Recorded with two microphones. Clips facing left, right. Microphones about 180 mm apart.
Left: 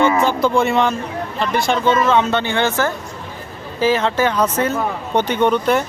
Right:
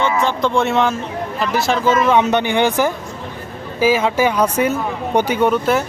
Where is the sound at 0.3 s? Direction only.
5° left (ahead or behind).